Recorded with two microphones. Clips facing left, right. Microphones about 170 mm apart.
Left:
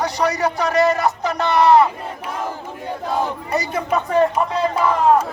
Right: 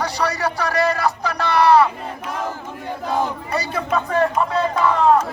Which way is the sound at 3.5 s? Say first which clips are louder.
Left 2 dB; 20° left (ahead or behind).